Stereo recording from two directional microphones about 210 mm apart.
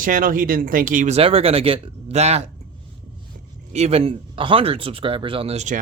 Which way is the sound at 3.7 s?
30° right (ahead or behind).